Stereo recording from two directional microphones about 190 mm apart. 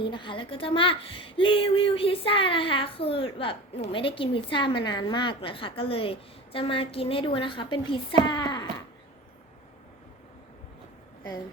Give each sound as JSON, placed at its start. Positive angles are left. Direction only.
{"t": 0.0, "sound": "a woman's voice", "side_deg": 25}